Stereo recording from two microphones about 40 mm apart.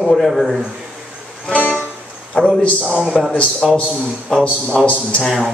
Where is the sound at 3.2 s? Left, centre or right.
Centre.